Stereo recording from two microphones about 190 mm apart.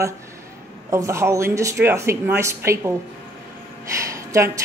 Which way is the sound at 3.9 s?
15° right (ahead or behind).